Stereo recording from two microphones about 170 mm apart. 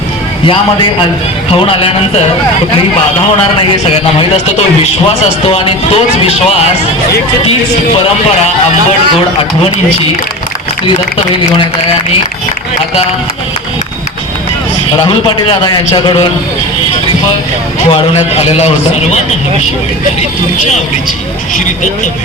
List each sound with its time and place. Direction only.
1.5 s speech: 30° left (ahead or behind)
5.5 s speech: 35° left (ahead or behind)
14.9 s a man's voice: 25° left (ahead or behind)
17.8 s speech: 35° left (ahead or behind)